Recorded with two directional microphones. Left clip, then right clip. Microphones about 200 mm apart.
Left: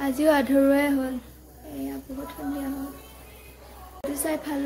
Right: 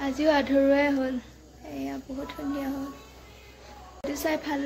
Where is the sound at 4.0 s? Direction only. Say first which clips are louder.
Even; centre (ahead or behind).